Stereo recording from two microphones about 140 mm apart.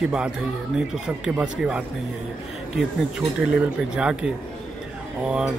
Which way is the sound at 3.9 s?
5° right (ahead or behind).